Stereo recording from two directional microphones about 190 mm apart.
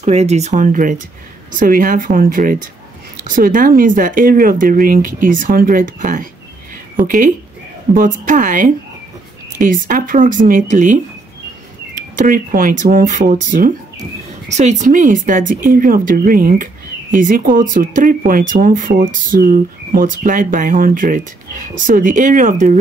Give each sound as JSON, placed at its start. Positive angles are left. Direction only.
{"t": 0.0, "sound": "speech", "side_deg": -35}
{"t": 12.2, "sound": "speech", "side_deg": -45}